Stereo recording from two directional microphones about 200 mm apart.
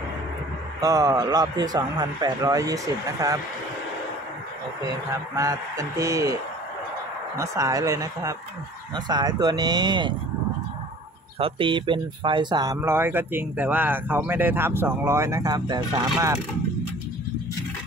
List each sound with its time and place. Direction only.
0.7 s speech: 20° right (ahead or behind)
4.8 s speech: 15° right (ahead or behind)
7.3 s speech: 15° right (ahead or behind)
11.3 s speech: 25° right (ahead or behind)